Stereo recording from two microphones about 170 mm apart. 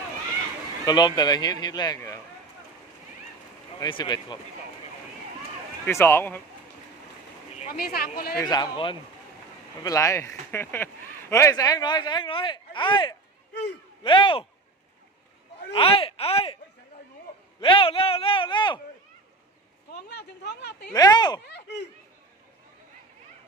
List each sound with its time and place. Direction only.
0.9 s speech: 25° left (ahead or behind)
3.8 s speech: 25° left (ahead or behind)
5.8 s speech: 15° left (ahead or behind)
7.7 s speech: 65° left (ahead or behind)
8.4 s speech: 25° left (ahead or behind)
9.8 s speech: 20° left (ahead or behind)
13.5 s speech: 80° left
14.0 s speech: 30° left (ahead or behind)
15.7 s speech: 30° left (ahead or behind)
17.6 s speech: 30° left (ahead or behind)
19.9 s speech: 80° left
20.9 s speech: 25° left (ahead or behind)
21.4 s a sound: 90° left